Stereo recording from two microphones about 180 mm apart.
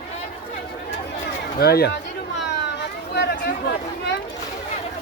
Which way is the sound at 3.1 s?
65° left (ahead or behind).